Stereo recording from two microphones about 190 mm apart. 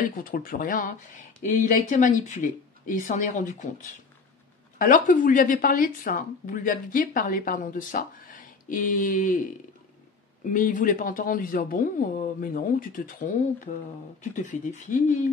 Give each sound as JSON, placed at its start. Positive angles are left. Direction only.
{"t": 0.0, "sound": "a woman's voice", "side_deg": 45}
{"t": 4.7, "sound": "a woman's voice", "side_deg": 45}